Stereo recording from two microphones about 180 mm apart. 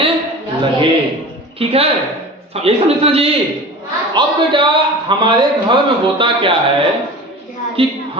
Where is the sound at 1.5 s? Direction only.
35° right (ahead or behind).